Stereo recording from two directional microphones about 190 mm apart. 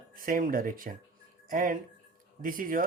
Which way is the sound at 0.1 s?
45° right (ahead or behind).